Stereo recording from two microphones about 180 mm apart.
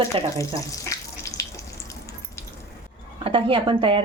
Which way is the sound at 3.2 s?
30° right (ahead or behind).